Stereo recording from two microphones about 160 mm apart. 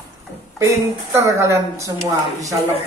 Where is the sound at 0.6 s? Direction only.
15° right (ahead or behind).